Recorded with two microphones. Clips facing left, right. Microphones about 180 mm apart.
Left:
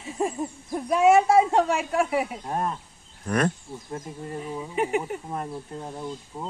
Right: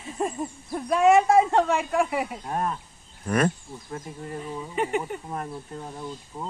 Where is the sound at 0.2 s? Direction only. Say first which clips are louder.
Left 1 dB; 10° left (ahead or behind).